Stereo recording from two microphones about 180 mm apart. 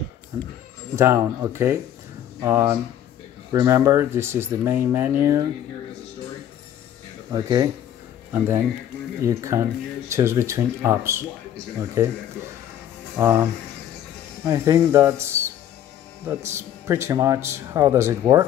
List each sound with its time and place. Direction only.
0.3 s speech: 20° right (ahead or behind)
7.3 s speech: 25° right (ahead or behind)
9.2 s speech: 15° right (ahead or behind)
13.2 s speech: 10° right (ahead or behind)